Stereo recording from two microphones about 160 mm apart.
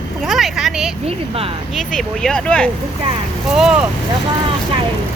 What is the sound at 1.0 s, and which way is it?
Speech, 35° right (ahead or behind).